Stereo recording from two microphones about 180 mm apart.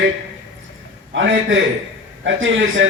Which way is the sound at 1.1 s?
90° right.